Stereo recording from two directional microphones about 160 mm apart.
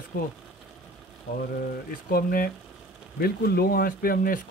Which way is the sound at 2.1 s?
65° left (ahead or behind).